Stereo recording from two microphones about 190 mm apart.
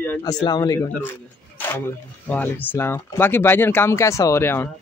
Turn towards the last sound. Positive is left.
turn(degrees=10)  # may be behind; listen again after turning